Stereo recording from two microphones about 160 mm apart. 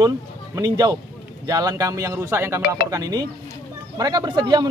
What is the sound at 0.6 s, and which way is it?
A man's voice, 25° right (ahead or behind).